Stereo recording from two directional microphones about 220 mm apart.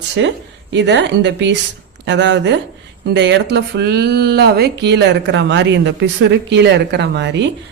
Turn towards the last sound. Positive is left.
turn(degrees=-55)  # may be behind; listen again after turning